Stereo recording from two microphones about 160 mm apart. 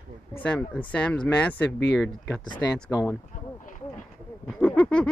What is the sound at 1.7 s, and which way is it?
Speech, 90° left.